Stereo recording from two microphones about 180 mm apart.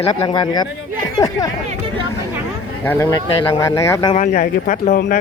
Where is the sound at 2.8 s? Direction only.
10° left (ahead or behind).